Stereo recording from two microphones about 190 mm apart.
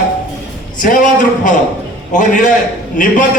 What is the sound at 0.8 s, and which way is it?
Speech, 45° left (ahead or behind).